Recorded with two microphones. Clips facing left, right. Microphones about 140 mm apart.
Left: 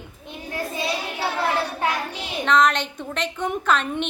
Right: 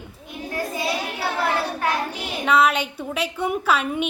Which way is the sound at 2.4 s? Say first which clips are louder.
Even; 10° right (ahead or behind).